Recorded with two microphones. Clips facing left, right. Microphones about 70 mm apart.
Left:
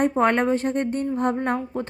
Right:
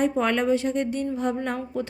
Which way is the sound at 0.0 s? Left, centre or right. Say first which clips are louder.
Left 3 dB; left.